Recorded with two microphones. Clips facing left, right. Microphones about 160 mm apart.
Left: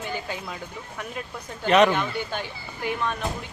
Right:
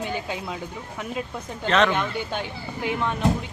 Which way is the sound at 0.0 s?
15° right (ahead or behind).